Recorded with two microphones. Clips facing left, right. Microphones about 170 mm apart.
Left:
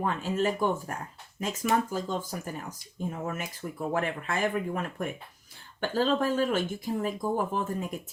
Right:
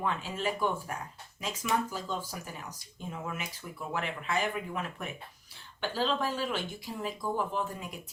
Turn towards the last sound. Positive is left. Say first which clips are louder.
# left 4 dB
turn(degrees=45)  # may be behind; listen again after turning